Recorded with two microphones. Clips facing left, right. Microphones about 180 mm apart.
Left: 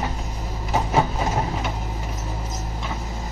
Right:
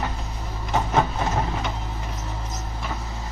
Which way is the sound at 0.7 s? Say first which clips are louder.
Left 1 dB; 10° left (ahead or behind).